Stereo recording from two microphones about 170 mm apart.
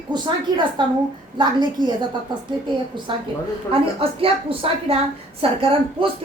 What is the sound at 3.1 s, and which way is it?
A woman's voice, 30° right (ahead or behind).